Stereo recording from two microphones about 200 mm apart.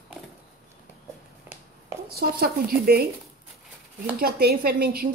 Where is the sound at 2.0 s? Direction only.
50° right (ahead or behind).